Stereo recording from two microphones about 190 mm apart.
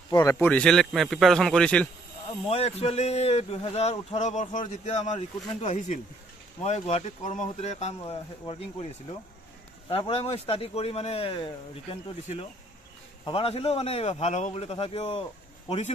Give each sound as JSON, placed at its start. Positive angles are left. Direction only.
{"t": 0.1, "sound": "a man's voice", "side_deg": 15}
{"t": 2.2, "sound": "speech", "side_deg": 30}